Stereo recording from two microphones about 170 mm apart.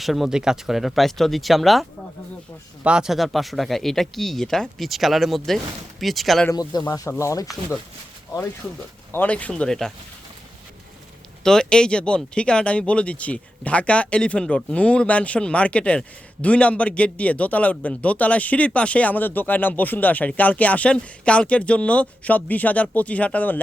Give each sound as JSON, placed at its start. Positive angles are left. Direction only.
{"t": 0.0, "sound": "speech", "side_deg": 0}
{"t": 6.5, "sound": "speech", "side_deg": 20}
{"t": 9.1, "sound": "speech", "side_deg": 10}
{"t": 11.4, "sound": "speech", "side_deg": 5}